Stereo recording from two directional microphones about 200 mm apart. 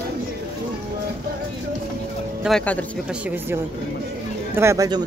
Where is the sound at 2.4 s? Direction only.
5° left (ahead or behind).